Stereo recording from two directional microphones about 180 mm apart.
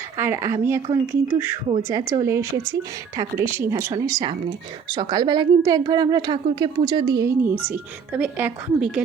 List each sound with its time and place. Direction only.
0.2 s a woman's voice: 15° right (ahead or behind)